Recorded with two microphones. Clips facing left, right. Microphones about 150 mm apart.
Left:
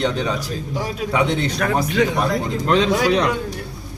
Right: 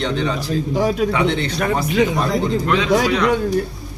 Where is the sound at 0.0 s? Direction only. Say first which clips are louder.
Even; 10° left (ahead or behind).